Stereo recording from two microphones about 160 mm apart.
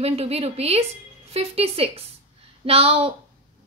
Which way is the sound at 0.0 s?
40° right (ahead or behind).